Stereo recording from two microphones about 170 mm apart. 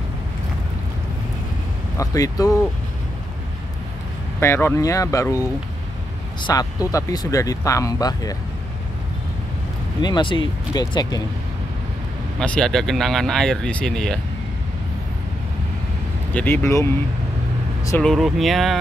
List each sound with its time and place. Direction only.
2.0 s speech: 20° left (ahead or behind)
4.4 s speech: 15° left (ahead or behind)
10.0 s speech: 25° left (ahead or behind)
12.4 s speech: 5° left (ahead or behind)
16.3 s speech: 10° left (ahead or behind)
18.0 s speech: centre (ahead or behind)